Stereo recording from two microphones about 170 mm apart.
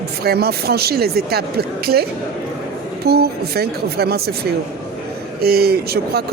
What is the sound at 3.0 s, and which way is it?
Speech, 65° right (ahead or behind).